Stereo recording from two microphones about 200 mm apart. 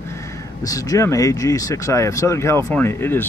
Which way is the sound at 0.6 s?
15° left (ahead or behind).